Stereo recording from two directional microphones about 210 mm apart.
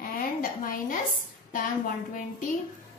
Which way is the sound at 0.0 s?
45° left (ahead or behind).